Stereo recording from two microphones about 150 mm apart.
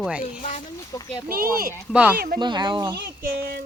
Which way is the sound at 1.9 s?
10° right (ahead or behind).